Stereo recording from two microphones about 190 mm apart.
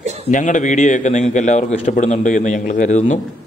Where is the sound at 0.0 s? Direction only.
35° right (ahead or behind).